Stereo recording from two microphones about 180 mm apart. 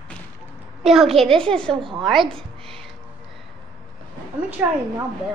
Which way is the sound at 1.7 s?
30° right (ahead or behind).